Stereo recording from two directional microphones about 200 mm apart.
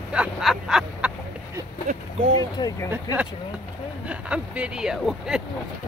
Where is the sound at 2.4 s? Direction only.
20° left (ahead or behind).